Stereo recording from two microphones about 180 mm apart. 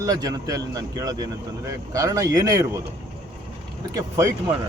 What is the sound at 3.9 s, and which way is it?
Speech, 15° right (ahead or behind).